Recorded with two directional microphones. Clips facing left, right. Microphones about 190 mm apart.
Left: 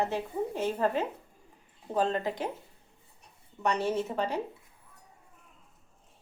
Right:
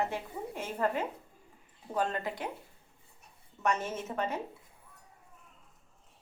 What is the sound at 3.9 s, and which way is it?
Speech, 15° left (ahead or behind).